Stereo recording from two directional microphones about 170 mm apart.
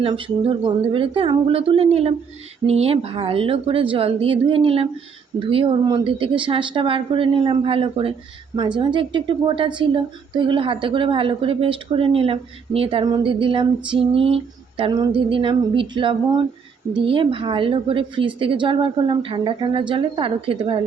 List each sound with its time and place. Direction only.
0.0 s a woman's voice: 30° right (ahead or behind)